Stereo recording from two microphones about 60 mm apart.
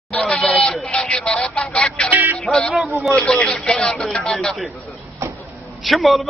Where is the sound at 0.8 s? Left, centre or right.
Centre.